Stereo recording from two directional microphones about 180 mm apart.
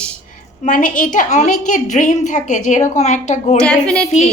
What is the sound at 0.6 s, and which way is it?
A woman's voice, 45° left (ahead or behind).